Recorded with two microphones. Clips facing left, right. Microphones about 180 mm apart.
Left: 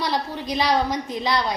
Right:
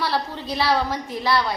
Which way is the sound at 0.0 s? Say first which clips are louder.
Even; 15° left (ahead or behind).